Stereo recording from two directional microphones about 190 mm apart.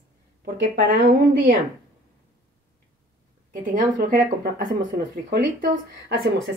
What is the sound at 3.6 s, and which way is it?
Speech, 45° right (ahead or behind).